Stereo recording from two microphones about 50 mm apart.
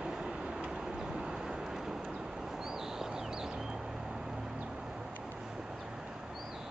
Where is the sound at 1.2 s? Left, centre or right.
Centre.